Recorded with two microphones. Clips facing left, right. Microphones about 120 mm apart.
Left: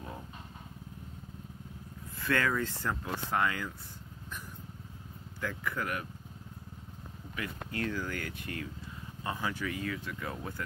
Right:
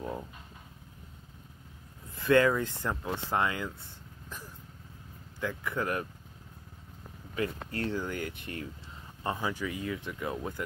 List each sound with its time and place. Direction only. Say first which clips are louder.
2.1 s speech: right 7 dB; 20° right (ahead or behind)
5.4 s speech: right 3 dB; 20° right (ahead or behind)
7.3 s speech: right 4 dB; 35° right (ahead or behind)
8.0 s speech: right 2 dB; 20° right (ahead or behind)
9.4 s speech: right 1 dB; 15° right (ahead or behind)